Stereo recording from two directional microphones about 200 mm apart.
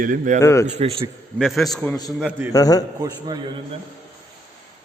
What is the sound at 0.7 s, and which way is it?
Speech, 30° right (ahead or behind).